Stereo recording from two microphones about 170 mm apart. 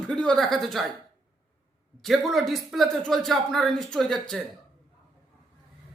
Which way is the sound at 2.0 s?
Centre (ahead or behind).